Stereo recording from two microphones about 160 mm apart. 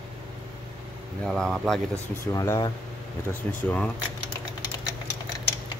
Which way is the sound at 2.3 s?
20° left (ahead or behind).